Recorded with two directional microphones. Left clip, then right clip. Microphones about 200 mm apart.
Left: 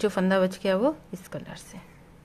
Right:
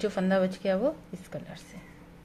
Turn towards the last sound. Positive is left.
turn(degrees=20)  # may be behind; listen again after turning